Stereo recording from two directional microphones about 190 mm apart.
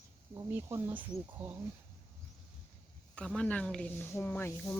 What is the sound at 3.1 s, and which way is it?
Speech, 5° left (ahead or behind).